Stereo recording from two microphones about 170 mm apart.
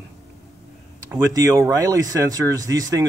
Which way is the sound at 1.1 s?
15° right (ahead or behind).